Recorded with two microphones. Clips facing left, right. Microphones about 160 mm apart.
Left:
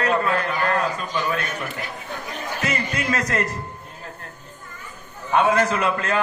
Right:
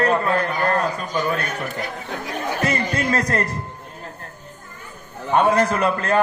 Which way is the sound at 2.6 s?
35° right (ahead or behind).